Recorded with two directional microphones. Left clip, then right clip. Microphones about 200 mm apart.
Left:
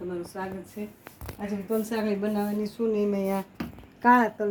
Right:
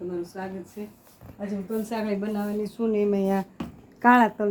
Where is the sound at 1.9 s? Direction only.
25° right (ahead or behind).